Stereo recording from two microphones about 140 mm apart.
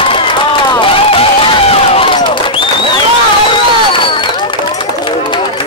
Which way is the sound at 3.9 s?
35° left (ahead or behind).